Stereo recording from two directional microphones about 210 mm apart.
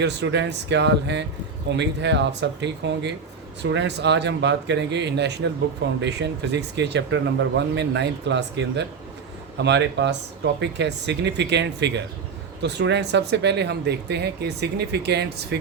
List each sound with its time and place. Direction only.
0.0 s speech: 55° right (ahead or behind)